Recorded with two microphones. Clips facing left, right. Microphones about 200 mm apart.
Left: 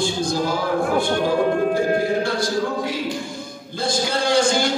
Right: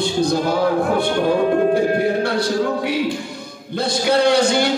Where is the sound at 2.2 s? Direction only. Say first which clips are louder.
Right 3 dB; 60° right (ahead or behind).